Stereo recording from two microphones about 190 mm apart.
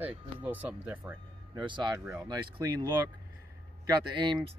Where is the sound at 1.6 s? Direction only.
25° right (ahead or behind).